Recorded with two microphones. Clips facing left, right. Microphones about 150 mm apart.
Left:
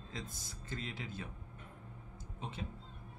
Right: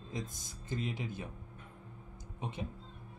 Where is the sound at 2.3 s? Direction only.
15° right (ahead or behind).